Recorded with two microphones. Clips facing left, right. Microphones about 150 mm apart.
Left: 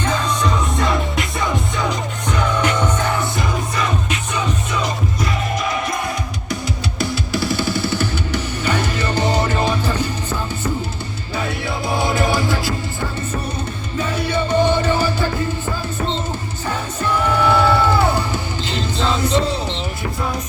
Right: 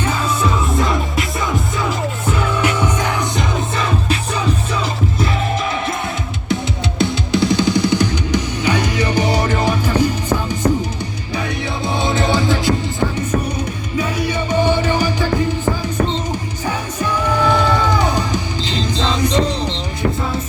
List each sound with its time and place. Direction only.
0.0 s music: 10° right (ahead or behind)
3.8 s music: 30° right (ahead or behind)
7.0 s music: 20° right (ahead or behind)
11.9 s music: 20° right (ahead or behind)
14.0 s music: 10° right (ahead or behind)
16.6 s music: 15° right (ahead or behind)